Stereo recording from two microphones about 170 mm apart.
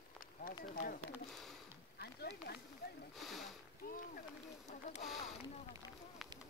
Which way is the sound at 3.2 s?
Centre (ahead or behind).